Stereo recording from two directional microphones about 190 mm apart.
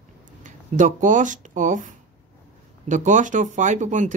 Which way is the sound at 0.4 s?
40° right (ahead or behind).